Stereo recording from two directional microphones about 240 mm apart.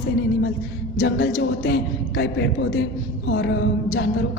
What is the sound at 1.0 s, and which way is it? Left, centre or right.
A woman's voice, left.